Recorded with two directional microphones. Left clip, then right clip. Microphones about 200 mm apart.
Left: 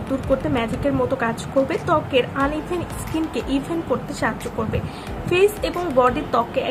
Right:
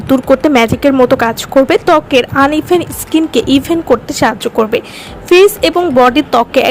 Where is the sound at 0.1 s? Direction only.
50° right (ahead or behind).